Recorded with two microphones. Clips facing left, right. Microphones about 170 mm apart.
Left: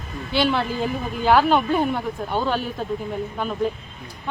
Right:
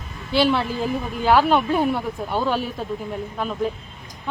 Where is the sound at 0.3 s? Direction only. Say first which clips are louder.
Right 2 dB; centre (ahead or behind).